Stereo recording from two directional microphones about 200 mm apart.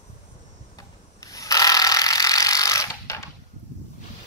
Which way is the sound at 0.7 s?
15° left (ahead or behind).